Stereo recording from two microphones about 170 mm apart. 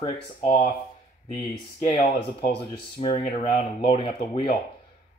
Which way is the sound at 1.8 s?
50° left (ahead or behind).